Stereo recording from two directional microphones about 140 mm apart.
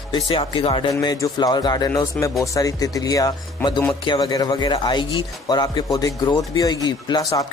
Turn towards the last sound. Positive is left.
turn(degrees=25)  # may be behind; listen again after turning